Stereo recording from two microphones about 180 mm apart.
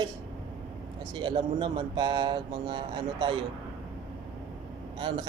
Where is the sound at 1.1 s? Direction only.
25° right (ahead or behind).